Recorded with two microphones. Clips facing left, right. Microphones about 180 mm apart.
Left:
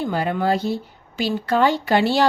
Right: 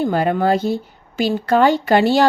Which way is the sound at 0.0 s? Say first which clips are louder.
Right 5 dB; 50° right (ahead or behind).